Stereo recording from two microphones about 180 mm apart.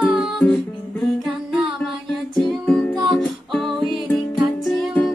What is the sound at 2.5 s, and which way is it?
Music, centre (ahead or behind).